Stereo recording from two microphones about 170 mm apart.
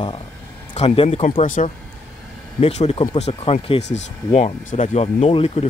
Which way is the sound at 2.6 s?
35° left (ahead or behind).